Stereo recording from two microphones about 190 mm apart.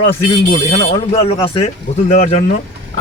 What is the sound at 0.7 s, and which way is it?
Speech, 30° left (ahead or behind).